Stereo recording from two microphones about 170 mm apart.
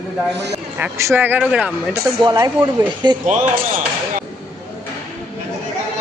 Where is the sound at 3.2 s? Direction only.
45° right (ahead or behind).